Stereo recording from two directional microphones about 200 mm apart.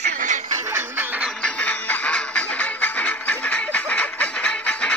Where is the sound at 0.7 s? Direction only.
10° right (ahead or behind).